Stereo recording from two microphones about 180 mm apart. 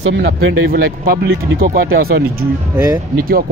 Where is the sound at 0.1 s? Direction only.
75° right (ahead or behind); by 2.2 s 55° right (ahead or behind).